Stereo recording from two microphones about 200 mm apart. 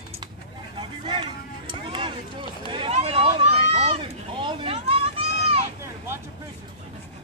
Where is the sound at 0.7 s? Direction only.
25° right (ahead or behind).